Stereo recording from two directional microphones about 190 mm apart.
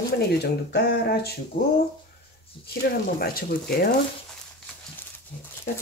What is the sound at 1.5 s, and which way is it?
Speech, 40° left (ahead or behind).